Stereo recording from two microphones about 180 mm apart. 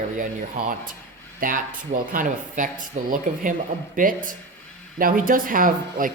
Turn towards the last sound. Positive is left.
turn(degrees=-50)  # may be behind; listen again after turning